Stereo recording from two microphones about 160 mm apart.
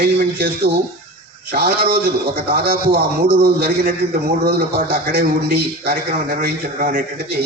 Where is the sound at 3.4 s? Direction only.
75° right (ahead or behind).